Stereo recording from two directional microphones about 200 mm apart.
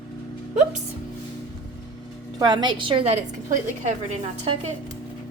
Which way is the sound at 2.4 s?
20° right (ahead or behind).